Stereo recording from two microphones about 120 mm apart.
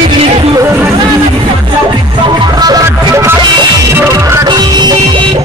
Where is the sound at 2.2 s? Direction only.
40° right (ahead or behind).